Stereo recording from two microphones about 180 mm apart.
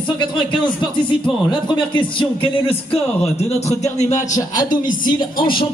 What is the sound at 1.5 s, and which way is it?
Speech, 30° left (ahead or behind).